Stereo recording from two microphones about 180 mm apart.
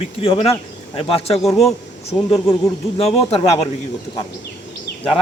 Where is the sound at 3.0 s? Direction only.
35° left (ahead or behind).